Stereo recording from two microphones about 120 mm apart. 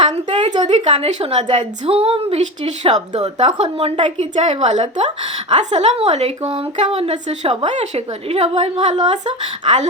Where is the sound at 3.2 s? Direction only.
65° right (ahead or behind).